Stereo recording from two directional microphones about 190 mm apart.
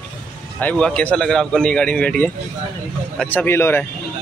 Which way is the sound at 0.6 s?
5° left (ahead or behind).